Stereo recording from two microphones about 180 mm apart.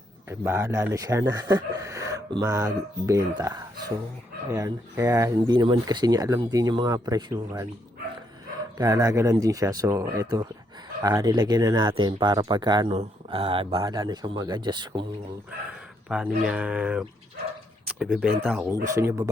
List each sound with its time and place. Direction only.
0.3 s speech: 15° right (ahead or behind)
8.8 s speech: 20° right (ahead or behind)
16.0 s speech: 5° right (ahead or behind)
18.9 s speech: 20° right (ahead or behind)